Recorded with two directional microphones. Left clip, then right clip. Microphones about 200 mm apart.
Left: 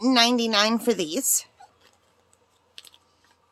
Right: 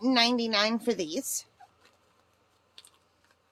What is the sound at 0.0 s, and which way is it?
A woman's voice, 20° left (ahead or behind).